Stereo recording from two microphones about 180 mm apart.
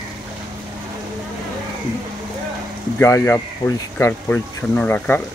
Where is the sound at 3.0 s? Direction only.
15° left (ahead or behind).